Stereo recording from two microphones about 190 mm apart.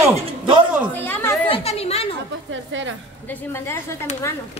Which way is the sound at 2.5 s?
80° right.